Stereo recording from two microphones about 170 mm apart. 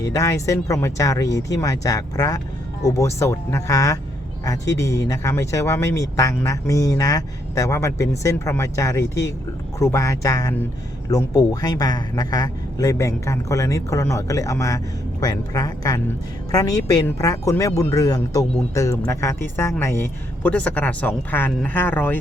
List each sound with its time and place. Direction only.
0.0 s a man's voice: 20° left (ahead or behind)